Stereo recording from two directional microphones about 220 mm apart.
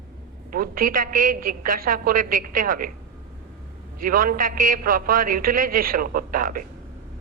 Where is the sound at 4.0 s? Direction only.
40° right (ahead or behind).